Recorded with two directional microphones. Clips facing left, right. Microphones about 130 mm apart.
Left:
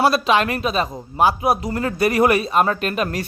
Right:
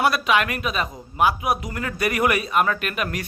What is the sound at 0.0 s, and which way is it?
Speech, 30° left (ahead or behind).